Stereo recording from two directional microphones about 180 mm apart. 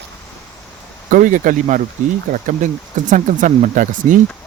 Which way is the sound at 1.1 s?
45° right (ahead or behind).